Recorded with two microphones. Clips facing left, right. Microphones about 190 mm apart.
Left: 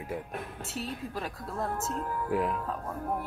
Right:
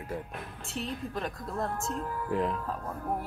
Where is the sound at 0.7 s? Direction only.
5° left (ahead or behind).